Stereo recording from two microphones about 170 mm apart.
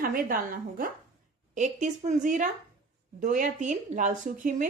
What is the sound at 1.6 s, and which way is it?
A woman's voice, 45° right (ahead or behind).